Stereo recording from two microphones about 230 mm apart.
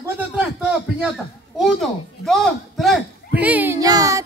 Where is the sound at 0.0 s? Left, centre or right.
Centre.